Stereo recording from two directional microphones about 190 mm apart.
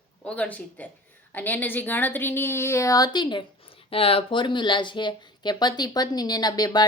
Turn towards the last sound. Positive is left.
turn(degrees=20)  # may be behind; listen again after turning